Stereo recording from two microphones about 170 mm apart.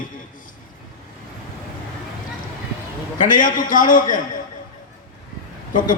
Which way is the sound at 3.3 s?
50° left (ahead or behind).